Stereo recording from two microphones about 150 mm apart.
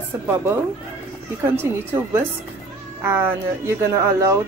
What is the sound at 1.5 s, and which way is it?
Speech, 15° right (ahead or behind).